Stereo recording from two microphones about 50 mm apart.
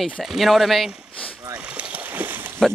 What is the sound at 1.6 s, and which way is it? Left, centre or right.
Boat, right.